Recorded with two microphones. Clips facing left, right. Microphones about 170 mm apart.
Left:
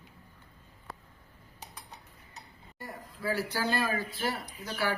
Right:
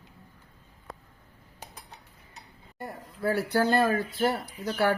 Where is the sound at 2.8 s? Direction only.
55° right (ahead or behind).